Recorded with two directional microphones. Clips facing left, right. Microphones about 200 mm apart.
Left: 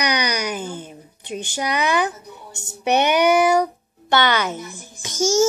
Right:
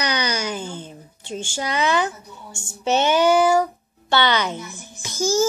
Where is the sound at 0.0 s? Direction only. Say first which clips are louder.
Left 2 dB; 15° left (ahead or behind).